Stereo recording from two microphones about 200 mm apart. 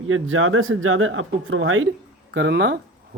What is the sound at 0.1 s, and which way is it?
Speech, 90° right.